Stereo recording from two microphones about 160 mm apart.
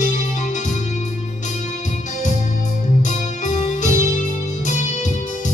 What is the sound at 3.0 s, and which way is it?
Music, 50° left (ahead or behind).